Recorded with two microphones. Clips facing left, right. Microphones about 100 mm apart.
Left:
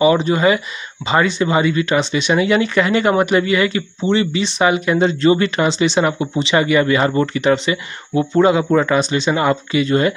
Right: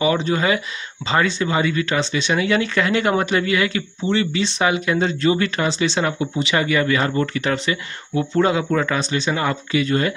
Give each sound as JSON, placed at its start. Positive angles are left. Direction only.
{"t": 0.0, "sound": "speech", "side_deg": 15}
{"t": 4.0, "sound": "speech", "side_deg": 20}
{"t": 4.6, "sound": "speech", "side_deg": 5}
{"t": 5.2, "sound": "speech", "side_deg": 30}
{"t": 5.6, "sound": "speech", "side_deg": 20}
{"t": 6.3, "sound": "speech", "side_deg": 25}